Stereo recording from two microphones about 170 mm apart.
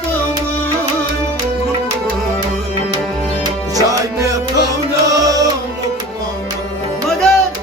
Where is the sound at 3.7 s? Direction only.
20° right (ahead or behind).